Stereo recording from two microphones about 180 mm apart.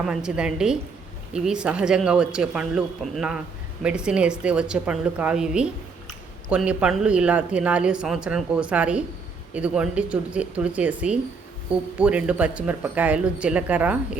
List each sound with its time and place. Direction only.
0.0 s speech: 5° right (ahead or behind)